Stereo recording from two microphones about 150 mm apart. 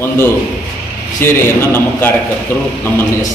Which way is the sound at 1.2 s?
15° left (ahead or behind).